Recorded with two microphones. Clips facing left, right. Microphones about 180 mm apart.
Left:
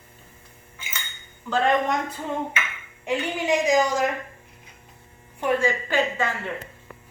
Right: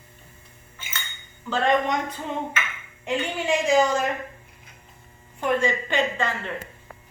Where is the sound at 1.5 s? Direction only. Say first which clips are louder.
Even; 5° left (ahead or behind).